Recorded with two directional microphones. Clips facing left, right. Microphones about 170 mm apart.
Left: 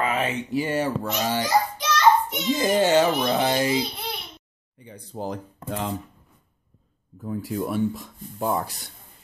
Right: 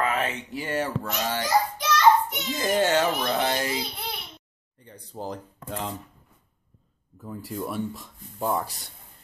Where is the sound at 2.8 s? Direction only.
5° left (ahead or behind).